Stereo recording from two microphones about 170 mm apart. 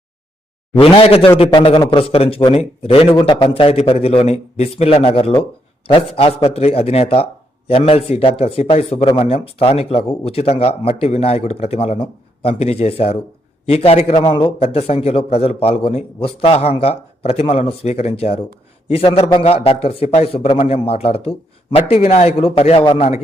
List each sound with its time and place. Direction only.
0.7 s a man's voice: 35° left (ahead or behind)
14.6 s a man's voice: 35° left (ahead or behind)